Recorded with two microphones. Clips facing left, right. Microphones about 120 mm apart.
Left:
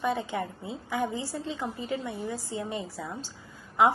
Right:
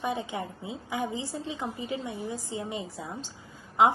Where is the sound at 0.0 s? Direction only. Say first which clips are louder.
Left 2 dB; 15° right (ahead or behind).